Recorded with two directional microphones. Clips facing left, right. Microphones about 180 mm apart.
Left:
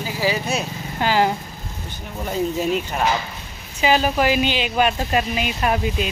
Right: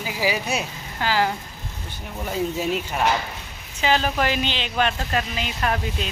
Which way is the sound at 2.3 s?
Centre (ahead or behind).